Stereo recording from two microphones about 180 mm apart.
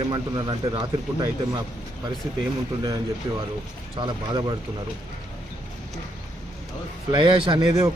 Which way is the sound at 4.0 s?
25° right (ahead or behind).